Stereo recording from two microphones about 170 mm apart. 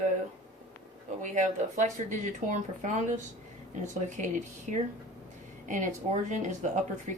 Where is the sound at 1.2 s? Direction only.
45° right (ahead or behind).